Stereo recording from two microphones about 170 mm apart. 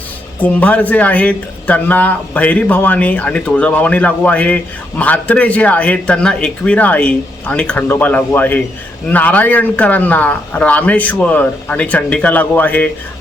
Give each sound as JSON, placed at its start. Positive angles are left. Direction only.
{"t": 0.3, "sound": "speech", "side_deg": 10}